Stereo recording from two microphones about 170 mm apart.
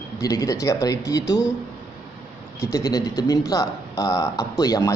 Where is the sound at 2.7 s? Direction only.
20° left (ahead or behind).